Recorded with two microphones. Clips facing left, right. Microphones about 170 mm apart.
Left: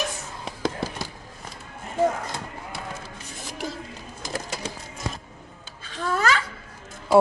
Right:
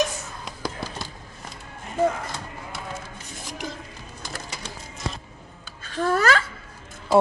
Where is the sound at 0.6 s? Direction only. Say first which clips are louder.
Left 4 dB; 25° left (ahead or behind).